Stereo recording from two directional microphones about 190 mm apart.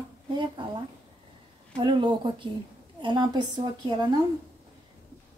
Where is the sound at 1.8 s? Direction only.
25° right (ahead or behind).